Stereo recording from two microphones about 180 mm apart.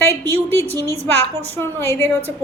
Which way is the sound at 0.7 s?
20° right (ahead or behind).